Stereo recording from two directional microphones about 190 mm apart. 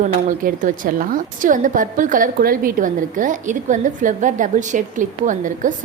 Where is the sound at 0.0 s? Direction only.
45° right (ahead or behind).